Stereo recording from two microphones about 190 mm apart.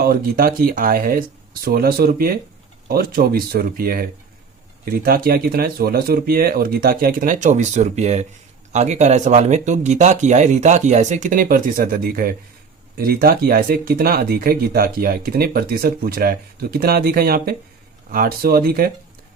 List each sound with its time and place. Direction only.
0.1 s speech: 50° right (ahead or behind)